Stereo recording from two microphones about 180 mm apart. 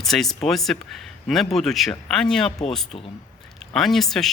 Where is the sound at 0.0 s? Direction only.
Centre (ahead or behind).